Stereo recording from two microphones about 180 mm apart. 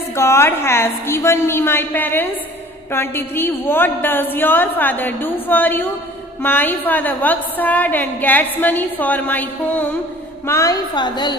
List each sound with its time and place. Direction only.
0.1 s a woman's voice: 15° left (ahead or behind)